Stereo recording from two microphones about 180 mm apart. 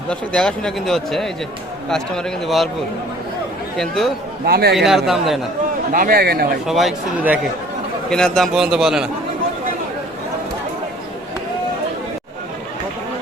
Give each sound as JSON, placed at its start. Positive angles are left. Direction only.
{"t": 0.1, "sound": "a man's voice", "side_deg": 5}
{"t": 3.8, "sound": "a man's voice", "side_deg": 0}
{"t": 4.4, "sound": "a man's voice", "side_deg": -60}
{"t": 4.9, "sound": "a man's voice", "side_deg": 0}
{"t": 5.9, "sound": "a man's voice", "side_deg": -50}
{"t": 6.7, "sound": "a man's voice", "side_deg": 0}